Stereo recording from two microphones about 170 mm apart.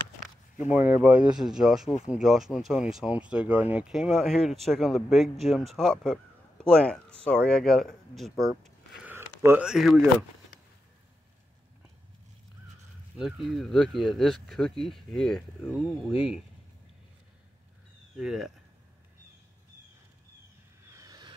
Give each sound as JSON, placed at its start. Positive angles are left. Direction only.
{"t": 0.6, "sound": "speech", "side_deg": -10}
{"t": 9.0, "sound": "a sound", "side_deg": -15}
{"t": 9.7, "sound": "speech", "side_deg": 0}
{"t": 13.2, "sound": "speech", "side_deg": 0}
{"t": 16.1, "sound": "speech", "side_deg": 35}
{"t": 18.1, "sound": "speech", "side_deg": -5}
{"t": 20.9, "sound": "a sound", "side_deg": -20}